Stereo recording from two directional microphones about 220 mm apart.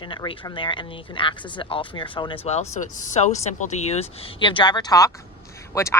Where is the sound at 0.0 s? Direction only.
20° left (ahead or behind).